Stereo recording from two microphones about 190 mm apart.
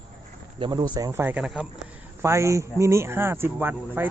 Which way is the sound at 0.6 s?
20° right (ahead or behind).